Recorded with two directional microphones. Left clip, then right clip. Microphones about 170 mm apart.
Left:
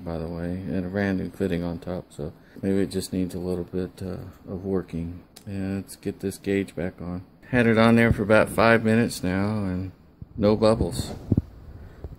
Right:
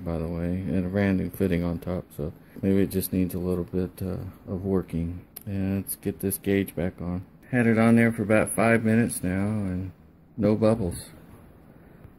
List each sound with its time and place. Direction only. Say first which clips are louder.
0.0 s speech: right 1 dB; 15° right (ahead or behind)
7.5 s speech: left 3 dB; 15° left (ahead or behind)
10.4 s speech: left 3 dB; centre (ahead or behind)